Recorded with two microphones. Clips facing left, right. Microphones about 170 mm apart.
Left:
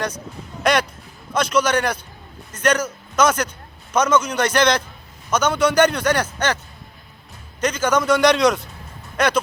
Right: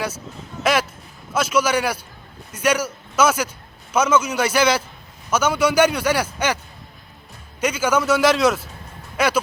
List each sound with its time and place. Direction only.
0.6 s a man's voice: 5° right (ahead or behind)
7.6 s a man's voice: 10° right (ahead or behind)